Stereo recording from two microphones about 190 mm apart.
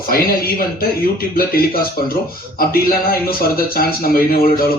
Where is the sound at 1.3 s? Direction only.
50° left (ahead or behind).